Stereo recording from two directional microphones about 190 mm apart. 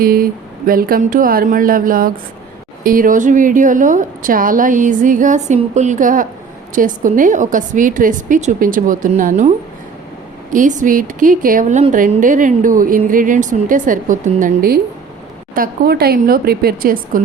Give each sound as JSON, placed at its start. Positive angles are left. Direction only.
{"t": 0.0, "sound": "speech", "side_deg": -50}
{"t": 10.5, "sound": "speech", "side_deg": -40}